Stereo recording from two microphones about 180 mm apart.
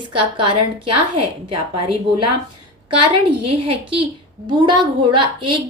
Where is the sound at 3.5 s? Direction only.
30° right (ahead or behind).